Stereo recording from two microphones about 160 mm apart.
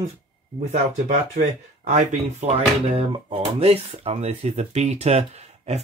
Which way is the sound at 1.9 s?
45° right (ahead or behind).